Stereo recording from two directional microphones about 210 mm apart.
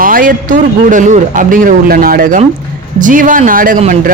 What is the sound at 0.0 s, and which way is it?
Speech, 40° right (ahead or behind).